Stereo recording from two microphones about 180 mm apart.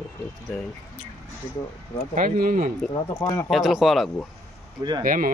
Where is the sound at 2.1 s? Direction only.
45° right (ahead or behind).